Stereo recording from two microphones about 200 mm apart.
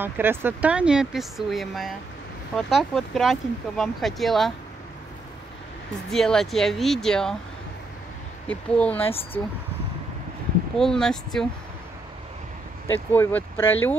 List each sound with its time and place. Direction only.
0.0 s speech: 10° right (ahead or behind)
6.0 s speech: centre (ahead or behind)
8.5 s speech: 5° left (ahead or behind)
9.0 s speech: 30° left (ahead or behind)
10.8 s speech: 5° left (ahead or behind)
13.1 s speech: 10° left (ahead or behind)